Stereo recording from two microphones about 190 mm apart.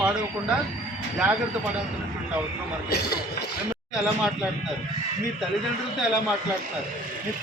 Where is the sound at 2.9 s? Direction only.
60° left (ahead or behind).